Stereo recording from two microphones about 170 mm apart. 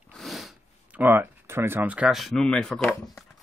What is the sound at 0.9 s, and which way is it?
Speech, 10° right (ahead or behind).